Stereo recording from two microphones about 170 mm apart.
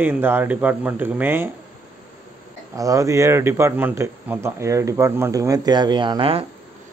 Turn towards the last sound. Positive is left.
turn(degrees=-30)  # may be behind; listen again after turning